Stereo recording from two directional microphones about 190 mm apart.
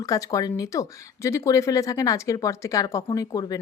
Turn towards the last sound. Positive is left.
turn(degrees=20)  # may be behind; listen again after turning